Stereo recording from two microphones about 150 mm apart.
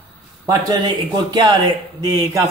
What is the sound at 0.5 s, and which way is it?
A man's voice, 25° right (ahead or behind).